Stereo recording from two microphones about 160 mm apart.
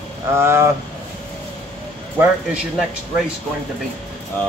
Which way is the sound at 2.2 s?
5° right (ahead or behind).